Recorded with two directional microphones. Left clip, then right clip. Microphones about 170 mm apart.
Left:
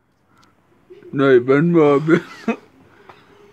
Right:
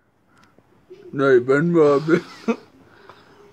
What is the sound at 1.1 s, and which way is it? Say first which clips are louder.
Speech: left 2 dB; 35° left (ahead or behind).